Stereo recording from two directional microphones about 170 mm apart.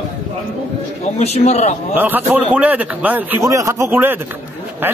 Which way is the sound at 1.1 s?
40° left (ahead or behind).